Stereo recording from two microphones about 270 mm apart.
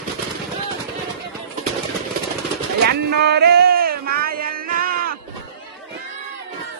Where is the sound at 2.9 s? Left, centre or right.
Right.